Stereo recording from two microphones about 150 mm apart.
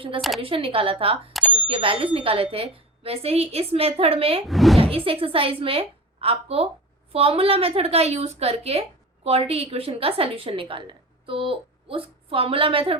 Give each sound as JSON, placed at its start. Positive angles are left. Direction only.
{"t": 0.2, "sound": "speech", "side_deg": 0}
{"t": 0.4, "sound": "a woman's voice", "side_deg": -35}
{"t": 1.3, "sound": "bicycle bell", "side_deg": 0}
{"t": 1.5, "sound": "a woman's voice", "side_deg": -40}
{"t": 4.4, "sound": "speech", "side_deg": 0}
{"t": 4.8, "sound": "a woman's voice", "side_deg": -40}